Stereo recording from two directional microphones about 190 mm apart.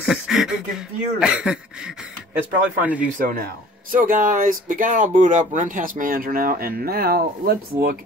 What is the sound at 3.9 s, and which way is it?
Speech, 45° right (ahead or behind).